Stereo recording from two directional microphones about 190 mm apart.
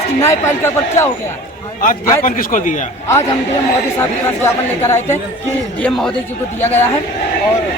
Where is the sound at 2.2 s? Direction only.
45° left (ahead or behind).